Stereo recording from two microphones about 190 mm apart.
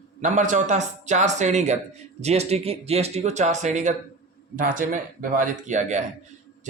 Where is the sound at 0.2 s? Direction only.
40° right (ahead or behind).